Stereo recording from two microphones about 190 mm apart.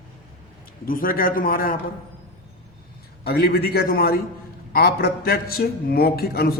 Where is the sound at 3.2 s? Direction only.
55° left (ahead or behind).